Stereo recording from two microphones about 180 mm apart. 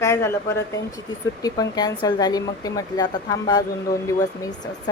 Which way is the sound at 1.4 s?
20° left (ahead or behind).